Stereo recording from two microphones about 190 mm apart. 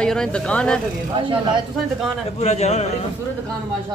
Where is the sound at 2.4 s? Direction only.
35° left (ahead or behind).